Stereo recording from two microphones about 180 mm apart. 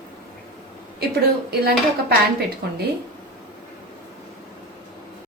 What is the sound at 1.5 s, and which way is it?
Speech, 60° right (ahead or behind).